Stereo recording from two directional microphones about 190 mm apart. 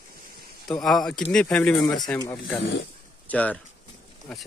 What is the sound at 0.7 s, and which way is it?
Speech, centre (ahead or behind).